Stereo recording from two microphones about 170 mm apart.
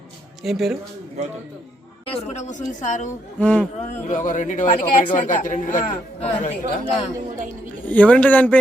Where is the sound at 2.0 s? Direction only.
40° left (ahead or behind).